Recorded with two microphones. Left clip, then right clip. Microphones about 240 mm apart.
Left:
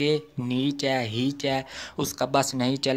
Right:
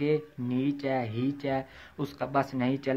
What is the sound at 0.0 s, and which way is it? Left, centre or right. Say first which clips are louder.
Speech: left 3 dB; left.